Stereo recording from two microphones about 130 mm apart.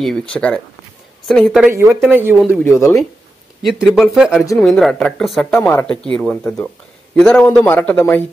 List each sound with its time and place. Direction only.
0.3 s a man's voice: 10° left (ahead or behind)
1.2 s speech: centre (ahead or behind)
1.7 s speech: 20° right (ahead or behind)
2.6 s speech: 20° left (ahead or behind)
3.6 s speech: 5° right (ahead or behind)
5.5 s a man's voice: 15° left (ahead or behind)